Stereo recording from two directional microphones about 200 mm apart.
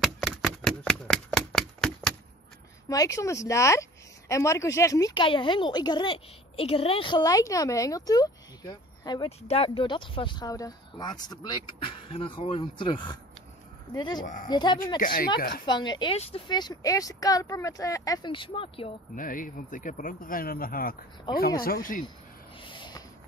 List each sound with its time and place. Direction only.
0.0 s a sound: centre (ahead or behind)
2.9 s speech: 15° left (ahead or behind)
14.2 s speech: 40° left (ahead or behind)
14.5 s speech: 20° left (ahead or behind)
15.0 s speech: 45° left (ahead or behind)
15.6 s speech: 20° left (ahead or behind)
19.1 s speech: 40° left (ahead or behind)
22.6 s a sound: 25° left (ahead or behind)